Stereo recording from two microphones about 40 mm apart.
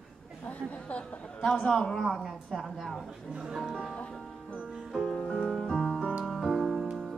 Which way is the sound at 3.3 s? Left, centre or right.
Centre.